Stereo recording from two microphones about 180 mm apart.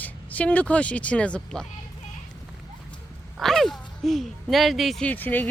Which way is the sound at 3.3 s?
Centre (ahead or behind).